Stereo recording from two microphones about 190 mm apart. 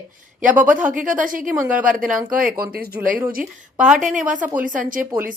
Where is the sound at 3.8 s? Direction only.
5° right (ahead or behind).